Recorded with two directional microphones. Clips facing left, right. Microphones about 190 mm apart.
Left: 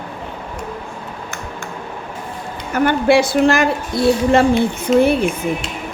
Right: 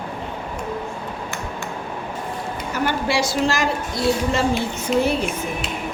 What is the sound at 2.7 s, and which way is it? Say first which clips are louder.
Speech: left 9 dB; 55° left (ahead or behind).